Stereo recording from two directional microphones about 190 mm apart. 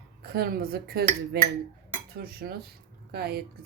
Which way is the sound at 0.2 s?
55° right (ahead or behind).